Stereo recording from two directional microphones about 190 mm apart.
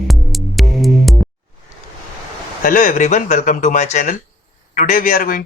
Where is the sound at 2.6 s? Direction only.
45° left (ahead or behind).